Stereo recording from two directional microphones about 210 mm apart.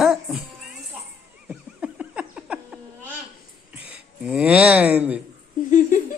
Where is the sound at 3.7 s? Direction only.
5° right (ahead or behind).